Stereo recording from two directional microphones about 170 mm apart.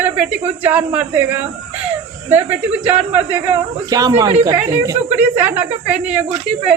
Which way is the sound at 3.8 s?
20° right (ahead or behind).